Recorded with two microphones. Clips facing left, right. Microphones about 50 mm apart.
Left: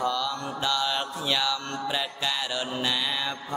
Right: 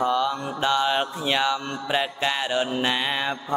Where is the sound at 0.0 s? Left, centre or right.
Right.